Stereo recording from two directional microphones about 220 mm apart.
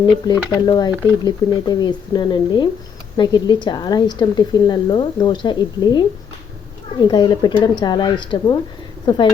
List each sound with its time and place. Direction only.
0.0 s speech: 20° left (ahead or behind)
7.1 s speech: 20° left (ahead or behind)